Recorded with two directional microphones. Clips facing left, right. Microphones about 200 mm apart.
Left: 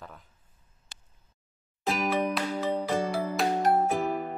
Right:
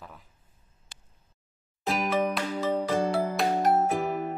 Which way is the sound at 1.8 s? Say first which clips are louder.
Right 1 dB; centre (ahead or behind).